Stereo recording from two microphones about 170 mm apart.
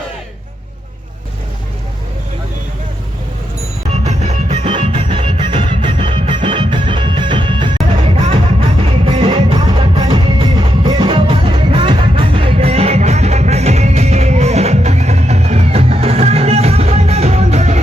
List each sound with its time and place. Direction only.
4.0 s music: 40° right (ahead or behind)
7.9 s music: 40° right (ahead or behind)